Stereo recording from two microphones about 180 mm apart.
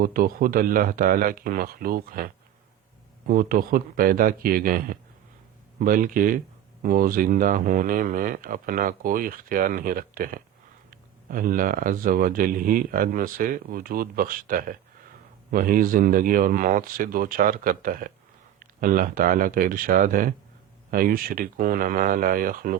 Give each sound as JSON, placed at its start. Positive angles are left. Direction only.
{"t": 0.0, "sound": "speech", "side_deg": -50}